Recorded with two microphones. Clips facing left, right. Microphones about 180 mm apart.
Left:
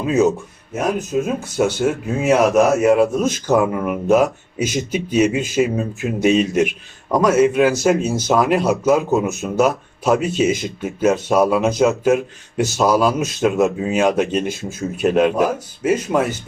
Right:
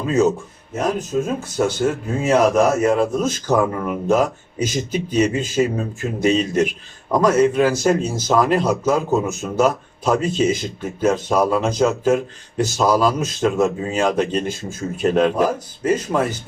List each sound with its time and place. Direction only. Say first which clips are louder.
0.0 s speech: left 1 dB; 10° left (ahead or behind)